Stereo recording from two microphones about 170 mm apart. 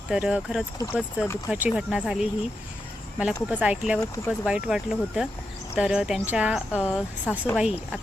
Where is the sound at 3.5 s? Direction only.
5° right (ahead or behind).